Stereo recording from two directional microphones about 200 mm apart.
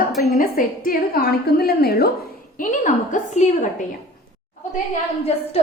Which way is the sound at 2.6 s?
40° left (ahead or behind).